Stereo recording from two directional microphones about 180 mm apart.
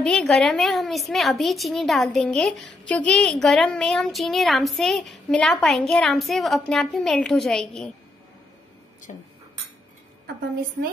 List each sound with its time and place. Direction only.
0.0 s a woman's voice: 5° left (ahead or behind)
9.1 s speech: 40° left (ahead or behind)